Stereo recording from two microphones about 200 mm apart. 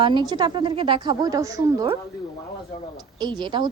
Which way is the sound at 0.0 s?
25° right (ahead or behind).